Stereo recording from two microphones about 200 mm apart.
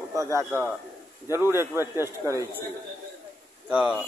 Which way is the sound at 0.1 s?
15° right (ahead or behind).